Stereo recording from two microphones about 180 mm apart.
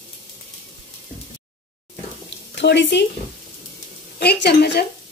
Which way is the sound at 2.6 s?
80° left.